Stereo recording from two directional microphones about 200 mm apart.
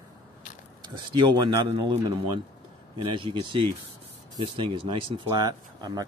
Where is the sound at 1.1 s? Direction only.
20° right (ahead or behind).